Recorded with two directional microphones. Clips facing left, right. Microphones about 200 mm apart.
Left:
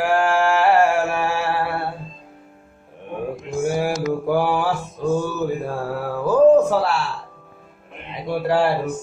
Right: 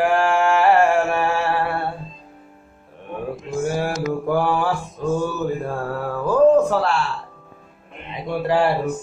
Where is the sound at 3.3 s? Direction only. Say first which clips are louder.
Left 1 dB; 10° left (ahead or behind).